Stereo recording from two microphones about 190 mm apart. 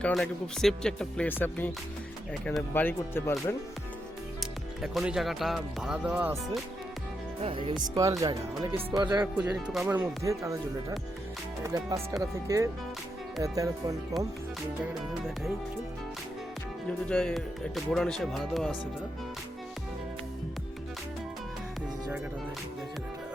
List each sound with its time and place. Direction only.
0.0 s speech: centre (ahead or behind)
4.4 s speech: centre (ahead or behind)
7.9 s speech: 15° right (ahead or behind)
9.2 s speech: 5° right (ahead or behind)
10.2 s speech: 15° right (ahead or behind)
17.1 s speech: 5° left (ahead or behind)